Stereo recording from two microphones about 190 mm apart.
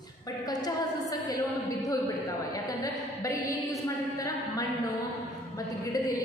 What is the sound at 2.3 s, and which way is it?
A woman's voice, 20° left (ahead or behind).